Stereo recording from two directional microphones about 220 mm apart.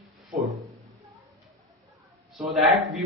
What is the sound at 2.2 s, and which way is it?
Speech, centre (ahead or behind).